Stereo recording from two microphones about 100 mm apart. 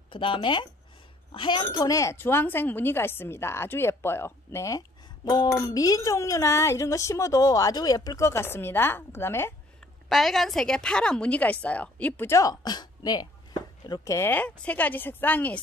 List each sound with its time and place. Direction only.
0.1 s a woman's voice: 60° left (ahead or behind)
1.8 s a woman's voice: 35° left (ahead or behind)
10.0 s a woman's voice: centre (ahead or behind); by 12.5 s 30° left (ahead or behind)
12.6 s a sound: 45° left (ahead or behind)
14.1 s a woman's voice: 25° left (ahead or behind)
14.4 s a woman's voice: 15° left (ahead or behind)